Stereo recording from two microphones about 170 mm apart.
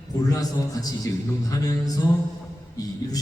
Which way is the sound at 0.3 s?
20° left (ahead or behind).